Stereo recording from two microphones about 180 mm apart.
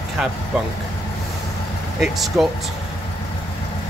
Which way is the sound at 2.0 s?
Centre (ahead or behind).